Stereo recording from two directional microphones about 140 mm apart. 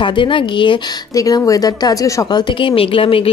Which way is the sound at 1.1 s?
25° left (ahead or behind).